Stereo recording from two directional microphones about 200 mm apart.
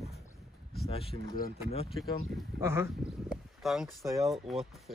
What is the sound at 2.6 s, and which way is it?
Speech, 10° right (ahead or behind).